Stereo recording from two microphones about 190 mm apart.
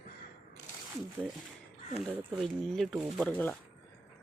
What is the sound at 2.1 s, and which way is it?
Speech, centre (ahead or behind).